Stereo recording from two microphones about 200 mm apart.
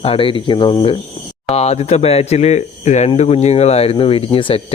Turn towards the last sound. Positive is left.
turn(degrees=25)  # may be behind; listen again after turning